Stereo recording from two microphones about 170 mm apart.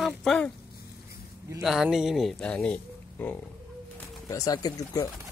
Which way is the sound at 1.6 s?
5° right (ahead or behind).